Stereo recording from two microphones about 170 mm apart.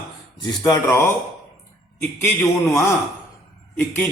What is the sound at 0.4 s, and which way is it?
Speech, 20° left (ahead or behind).